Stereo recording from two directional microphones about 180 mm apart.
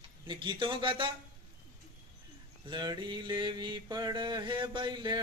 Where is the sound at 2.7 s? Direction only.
25° right (ahead or behind).